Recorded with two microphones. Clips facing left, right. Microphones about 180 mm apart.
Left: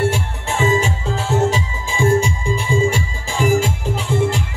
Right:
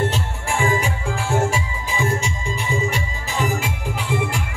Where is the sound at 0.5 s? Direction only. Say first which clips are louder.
Left 4 dB; 25° left (ahead or behind).